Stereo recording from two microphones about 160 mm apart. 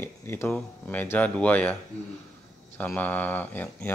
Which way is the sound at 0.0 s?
15° left (ahead or behind).